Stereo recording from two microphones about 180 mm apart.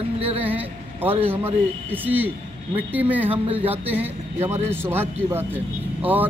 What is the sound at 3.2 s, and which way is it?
Speech, 30° right (ahead or behind).